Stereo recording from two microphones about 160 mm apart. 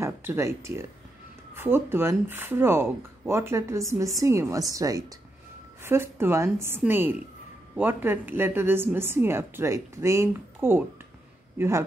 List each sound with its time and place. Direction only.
0.0 s a man's voice: 15° right (ahead or behind)